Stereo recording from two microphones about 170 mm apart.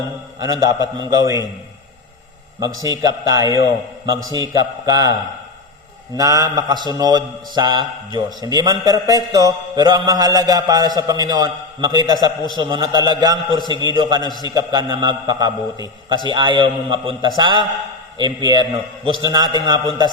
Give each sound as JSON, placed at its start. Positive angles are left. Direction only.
{"t": 0.3, "sound": "a man's voice", "side_deg": -20}
{"t": 2.6, "sound": "a man's voice", "side_deg": -20}
{"t": 6.1, "sound": "a man's voice", "side_deg": -20}